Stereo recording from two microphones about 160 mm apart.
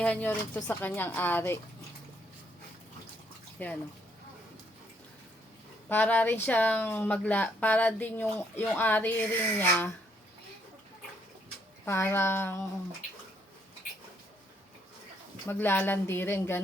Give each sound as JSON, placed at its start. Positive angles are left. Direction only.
{"t": 0.0, "sound": "speech", "side_deg": 10}
{"t": 3.6, "sound": "speech", "side_deg": 10}
{"t": 5.9, "sound": "speech", "side_deg": 10}
{"t": 11.9, "sound": "speech", "side_deg": 15}
{"t": 15.4, "sound": "speech", "side_deg": 15}